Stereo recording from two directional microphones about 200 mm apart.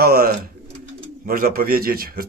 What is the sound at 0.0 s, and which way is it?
Bird, 45° right (ahead or behind).